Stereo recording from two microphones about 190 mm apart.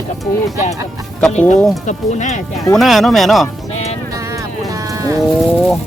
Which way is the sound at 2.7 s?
Centre (ahead or behind).